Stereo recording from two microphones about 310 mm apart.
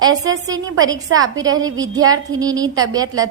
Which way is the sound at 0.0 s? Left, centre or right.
Centre.